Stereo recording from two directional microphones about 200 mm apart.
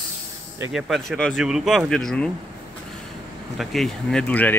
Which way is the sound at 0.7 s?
Centre (ahead or behind).